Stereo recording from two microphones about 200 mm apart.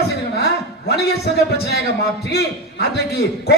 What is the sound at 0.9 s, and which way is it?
A man's voice, 55° left (ahead or behind).